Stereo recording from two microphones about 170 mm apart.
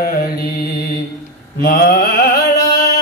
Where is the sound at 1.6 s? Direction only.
65° left (ahead or behind).